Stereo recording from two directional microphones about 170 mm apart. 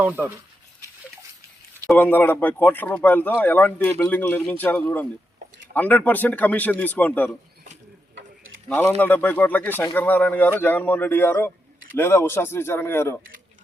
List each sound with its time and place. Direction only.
0.0 s speech: 10° right (ahead or behind)
1.9 s speech: 10° left (ahead or behind)
9.0 s speech: 10° left (ahead or behind)